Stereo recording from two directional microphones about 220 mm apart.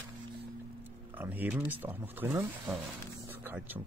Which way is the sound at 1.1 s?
10° right (ahead or behind).